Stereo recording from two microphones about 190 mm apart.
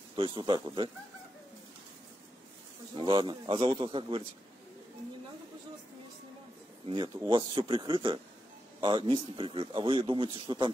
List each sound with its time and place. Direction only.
0.1 s a man's voice: 25° right (ahead or behind)
2.9 s a man's voice: 25° right (ahead or behind)
6.9 s a man's voice: 25° right (ahead or behind)